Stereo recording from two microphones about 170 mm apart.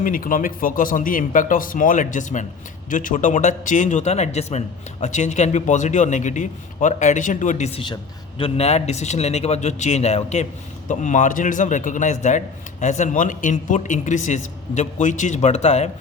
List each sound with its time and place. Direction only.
0.0 s a man's voice: 55° left (ahead or behind)